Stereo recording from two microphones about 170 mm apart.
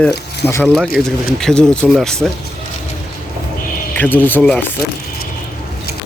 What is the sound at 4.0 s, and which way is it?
Speech, 10° left (ahead or behind).